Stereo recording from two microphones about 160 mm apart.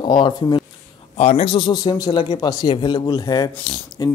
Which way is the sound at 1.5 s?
25° left (ahead or behind).